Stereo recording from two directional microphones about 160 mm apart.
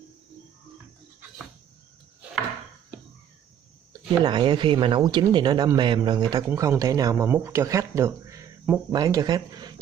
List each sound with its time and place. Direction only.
4.2 s speech: 25° right (ahead or behind); by 9.0 s 10° right (ahead or behind)
9.0 s speech: 25° right (ahead or behind)